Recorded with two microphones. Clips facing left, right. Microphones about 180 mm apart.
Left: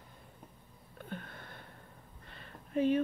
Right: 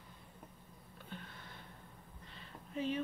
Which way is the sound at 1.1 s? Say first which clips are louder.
Left 6 dB; 55° left (ahead or behind).